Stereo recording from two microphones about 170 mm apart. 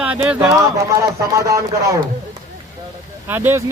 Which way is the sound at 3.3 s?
15° right (ahead or behind).